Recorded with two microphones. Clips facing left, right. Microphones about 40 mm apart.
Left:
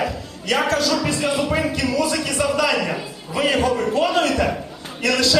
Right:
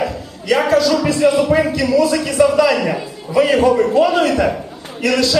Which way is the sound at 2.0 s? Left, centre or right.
Right.